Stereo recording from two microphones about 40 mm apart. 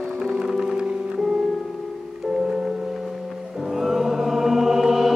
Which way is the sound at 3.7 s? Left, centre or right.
Centre.